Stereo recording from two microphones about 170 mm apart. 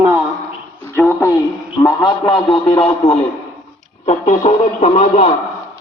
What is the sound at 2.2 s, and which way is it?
Speech, 35° left (ahead or behind).